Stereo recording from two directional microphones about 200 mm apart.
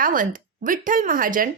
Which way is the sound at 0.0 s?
45° right (ahead or behind).